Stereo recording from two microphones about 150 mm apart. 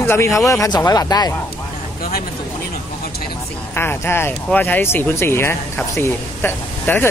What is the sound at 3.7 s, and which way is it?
Speech, 15° left (ahead or behind).